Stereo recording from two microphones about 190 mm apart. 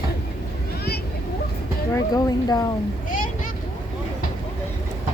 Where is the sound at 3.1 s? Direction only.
45° left (ahead or behind).